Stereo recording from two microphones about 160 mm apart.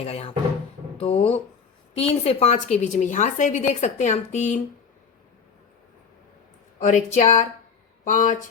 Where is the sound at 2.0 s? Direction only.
40° left (ahead or behind).